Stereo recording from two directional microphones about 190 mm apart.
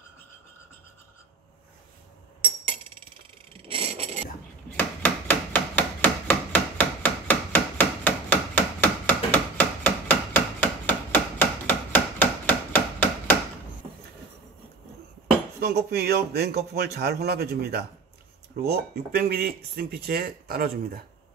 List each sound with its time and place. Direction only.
3.5 s vehicle: 30° right (ahead or behind)
4.7 s hammer: 10° left (ahead or behind)
15.6 s a man's voice: 55° right (ahead or behind)